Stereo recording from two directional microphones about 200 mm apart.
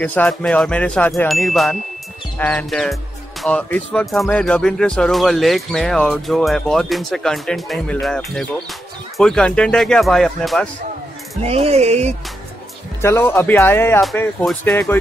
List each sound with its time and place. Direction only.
0.0 s speech: 5° left (ahead or behind)
11.4 s speech: 30° right (ahead or behind)
13.0 s speech: 10° left (ahead or behind)